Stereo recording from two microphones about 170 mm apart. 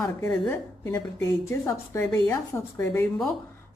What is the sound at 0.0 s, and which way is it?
A woman's voice, 15° left (ahead or behind).